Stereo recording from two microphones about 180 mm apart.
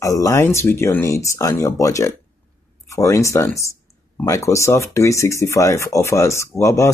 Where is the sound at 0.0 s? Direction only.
20° left (ahead or behind).